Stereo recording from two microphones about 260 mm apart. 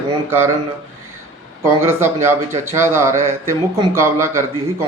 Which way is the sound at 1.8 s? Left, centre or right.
Centre.